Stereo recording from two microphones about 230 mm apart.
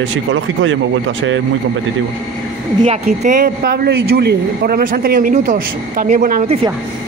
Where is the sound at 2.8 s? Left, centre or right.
Right.